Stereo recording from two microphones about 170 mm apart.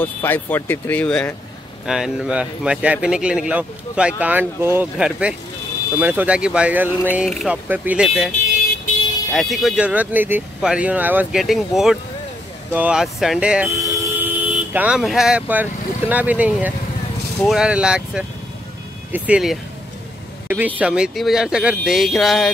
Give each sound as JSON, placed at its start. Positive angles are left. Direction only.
{"t": 0.0, "sound": "speech", "side_deg": 10}
{"t": 1.9, "sound": "speech", "side_deg": -5}
{"t": 13.7, "sound": "vehicle", "side_deg": -20}
{"t": 14.4, "sound": "speech", "side_deg": -10}